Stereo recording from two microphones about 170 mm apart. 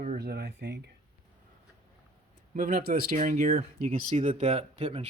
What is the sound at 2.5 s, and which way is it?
Speech, 55° right (ahead or behind).